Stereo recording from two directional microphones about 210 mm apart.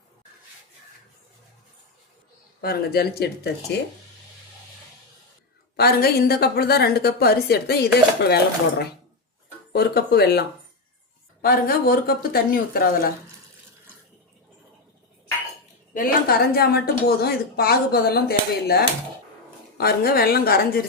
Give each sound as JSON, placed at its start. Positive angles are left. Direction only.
{"t": 2.6, "sound": "a woman's voice", "side_deg": 45}
{"t": 5.7, "sound": "a woman's voice", "side_deg": 50}
{"t": 9.7, "sound": "a woman's voice", "side_deg": 50}
{"t": 11.4, "sound": "a woman's voice", "side_deg": 45}
{"t": 16.0, "sound": "a woman's voice", "side_deg": 45}